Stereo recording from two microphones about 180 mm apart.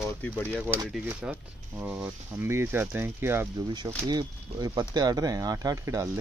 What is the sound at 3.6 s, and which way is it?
Speech, 25° right (ahead or behind).